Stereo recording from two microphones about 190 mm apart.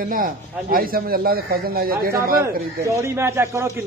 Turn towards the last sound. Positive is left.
turn(degrees=-15)  # may be behind; listen again after turning